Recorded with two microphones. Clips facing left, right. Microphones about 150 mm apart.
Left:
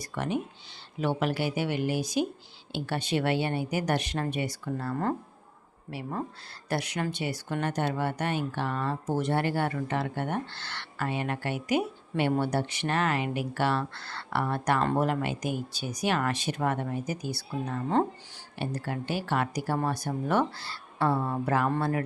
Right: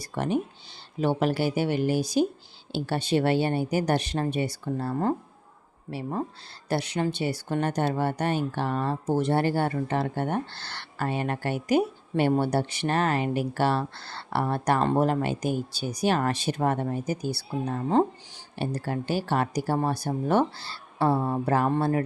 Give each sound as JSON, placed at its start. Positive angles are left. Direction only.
{"t": 0.0, "sound": "speech", "side_deg": -35}